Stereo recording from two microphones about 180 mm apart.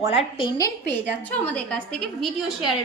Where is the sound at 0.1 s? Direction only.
30° left (ahead or behind).